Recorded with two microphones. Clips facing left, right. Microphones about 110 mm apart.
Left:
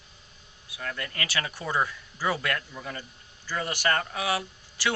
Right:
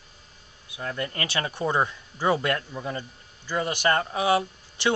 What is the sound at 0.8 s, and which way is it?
Speech, 25° right (ahead or behind).